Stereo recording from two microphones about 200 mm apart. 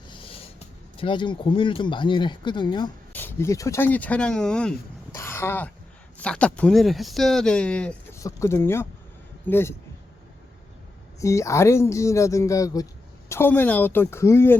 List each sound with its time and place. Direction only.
0.1 s a sound: 25° left (ahead or behind)
0.9 s speech: 25° left (ahead or behind)
3.1 s speech: 10° left (ahead or behind)
5.1 s throat clearing: 15° left (ahead or behind)
6.1 s speech: 5° left (ahead or behind)
11.2 s speech: 15° left (ahead or behind)